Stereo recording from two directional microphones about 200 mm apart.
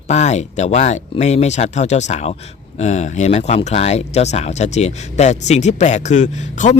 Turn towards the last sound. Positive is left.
turn(degrees=35)  # may be behind; listen again after turning